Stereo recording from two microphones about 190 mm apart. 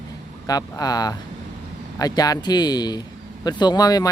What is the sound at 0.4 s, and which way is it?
Speech, 20° left (ahead or behind).